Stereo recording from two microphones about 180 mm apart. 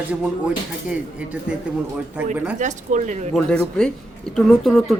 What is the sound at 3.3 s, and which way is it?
Speech, 5° left (ahead or behind).